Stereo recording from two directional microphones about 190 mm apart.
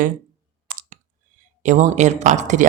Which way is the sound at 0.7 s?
50° right (ahead or behind).